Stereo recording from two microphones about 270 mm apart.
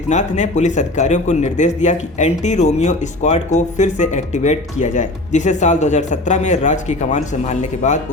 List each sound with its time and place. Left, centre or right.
0.1 s a man's voice: left